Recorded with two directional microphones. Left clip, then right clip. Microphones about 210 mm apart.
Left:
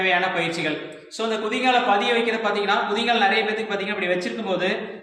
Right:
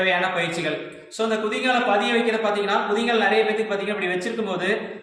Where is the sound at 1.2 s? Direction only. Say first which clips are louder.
Left 1 dB; 15° right (ahead or behind).